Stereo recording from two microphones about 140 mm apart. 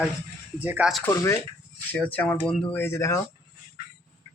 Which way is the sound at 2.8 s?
20° left (ahead or behind).